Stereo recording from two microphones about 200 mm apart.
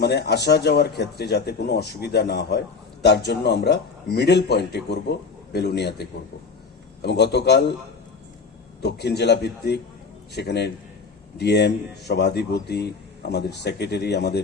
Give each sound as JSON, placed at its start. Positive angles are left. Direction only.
{"t": 0.0, "sound": "a man's voice", "side_deg": 55}
{"t": 8.8, "sound": "a man's voice", "side_deg": 55}